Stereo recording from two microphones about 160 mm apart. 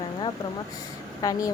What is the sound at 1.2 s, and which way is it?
Speech, 20° left (ahead or behind).